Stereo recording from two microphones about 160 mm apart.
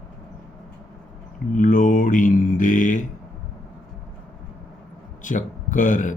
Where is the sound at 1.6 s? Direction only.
55° left (ahead or behind).